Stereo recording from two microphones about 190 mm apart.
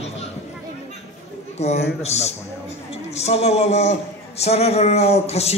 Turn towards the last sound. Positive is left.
turn(degrees=35)  # may be behind; listen again after turning